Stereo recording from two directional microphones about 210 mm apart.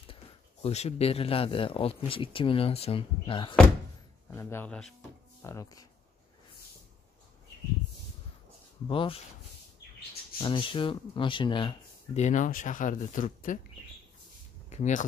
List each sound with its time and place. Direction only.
0.1 s speech: 30° left (ahead or behind)
4.3 s speech: 10° left (ahead or behind)
8.8 s speech: 25° left (ahead or behind)
10.4 s speech: 25° left (ahead or behind)
14.7 s speech: 35° left (ahead or behind)